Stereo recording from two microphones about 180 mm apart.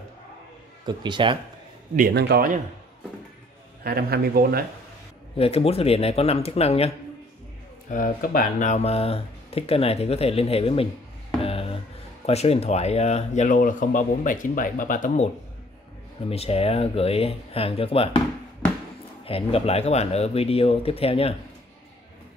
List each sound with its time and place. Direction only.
0.8 s speech: 25° right (ahead or behind)
2.0 s a man's voice: 60° right (ahead or behind)
3.8 s speech: 60° right (ahead or behind)
5.4 s speech: 35° left (ahead or behind)
7.9 s speech: 50° left (ahead or behind); by 10.9 s 35° left (ahead or behind)
11.4 s a sound: 30° left (ahead or behind)
12.3 s speech: 35° left (ahead or behind)
16.3 s speech: 35° left (ahead or behind)
18.6 s a sound: 10° left (ahead or behind)
19.2 s speech: 30° left (ahead or behind)